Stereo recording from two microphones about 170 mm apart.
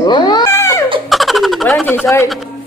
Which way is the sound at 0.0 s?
25° left (ahead or behind).